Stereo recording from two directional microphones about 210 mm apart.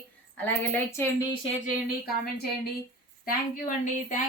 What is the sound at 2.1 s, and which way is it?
A woman's voice, 45° left (ahead or behind).